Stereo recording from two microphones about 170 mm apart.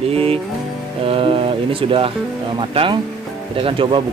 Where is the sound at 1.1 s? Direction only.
35° right (ahead or behind).